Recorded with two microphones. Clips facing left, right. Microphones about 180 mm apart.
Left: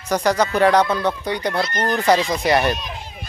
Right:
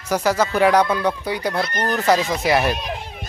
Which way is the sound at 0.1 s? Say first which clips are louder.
Left 1 dB; 5° right (ahead or behind).